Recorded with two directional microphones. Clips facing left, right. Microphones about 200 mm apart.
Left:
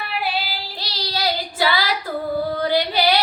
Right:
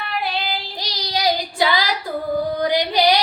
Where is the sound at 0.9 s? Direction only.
15° right (ahead or behind).